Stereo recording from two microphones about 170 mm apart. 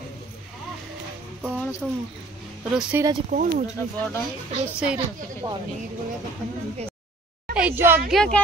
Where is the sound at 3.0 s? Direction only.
20° right (ahead or behind).